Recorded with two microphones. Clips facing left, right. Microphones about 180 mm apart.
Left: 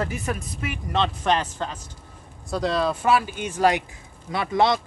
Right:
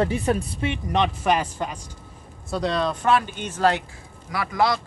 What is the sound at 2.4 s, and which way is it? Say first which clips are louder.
Speech: left 1 dB; centre (ahead or behind).